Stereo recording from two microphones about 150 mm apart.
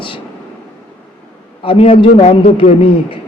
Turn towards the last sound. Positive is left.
turn(degrees=40)  # may be behind; listen again after turning